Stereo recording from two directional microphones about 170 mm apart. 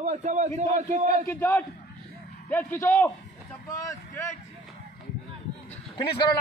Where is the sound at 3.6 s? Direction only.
20° left (ahead or behind).